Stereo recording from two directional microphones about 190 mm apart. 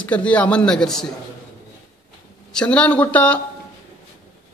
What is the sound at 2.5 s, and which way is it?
Speech, 5° left (ahead or behind).